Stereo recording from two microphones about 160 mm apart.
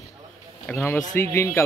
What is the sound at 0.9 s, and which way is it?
Speech, 15° left (ahead or behind).